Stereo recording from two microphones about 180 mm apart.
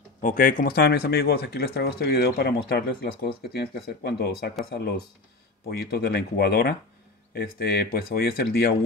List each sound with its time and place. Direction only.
0.2 s speech: 50° left (ahead or behind)